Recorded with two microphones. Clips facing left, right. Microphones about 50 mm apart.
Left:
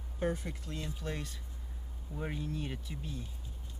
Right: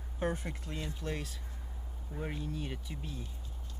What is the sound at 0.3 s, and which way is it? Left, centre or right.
Speech, right.